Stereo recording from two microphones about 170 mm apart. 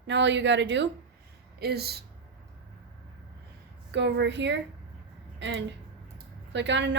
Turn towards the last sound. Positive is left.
turn(degrees=-90)